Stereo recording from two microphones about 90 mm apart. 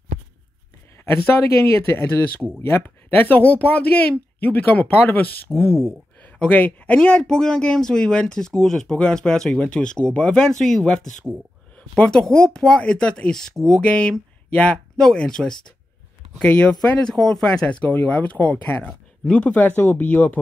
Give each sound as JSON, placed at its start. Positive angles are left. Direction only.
{"t": 0.9, "sound": "a man's voice", "side_deg": 25}